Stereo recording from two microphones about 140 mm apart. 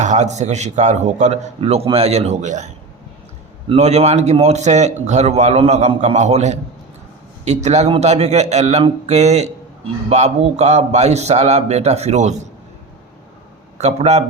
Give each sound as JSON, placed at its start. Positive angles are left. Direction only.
{"t": 0.0, "sound": "a man's voice", "side_deg": -55}
{"t": 3.8, "sound": "a man's voice", "side_deg": -50}
{"t": 13.7, "sound": "a man's voice", "side_deg": -50}